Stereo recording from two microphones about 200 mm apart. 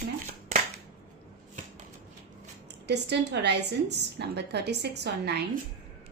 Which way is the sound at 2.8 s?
55° right (ahead or behind).